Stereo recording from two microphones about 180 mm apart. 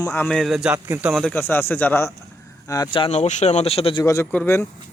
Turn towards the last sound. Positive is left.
turn(degrees=10)  # may be behind; listen again after turning